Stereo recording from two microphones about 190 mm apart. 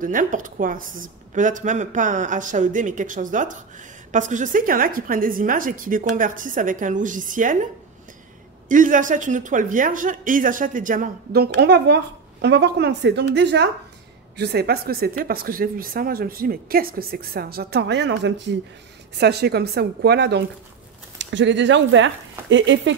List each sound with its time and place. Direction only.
0.0 s speech: 45° right (ahead or behind)
8.6 s a woman's voice: 45° right (ahead or behind); by 20.4 s 60° right (ahead or behind)
21.2 s speech: 75° right (ahead or behind)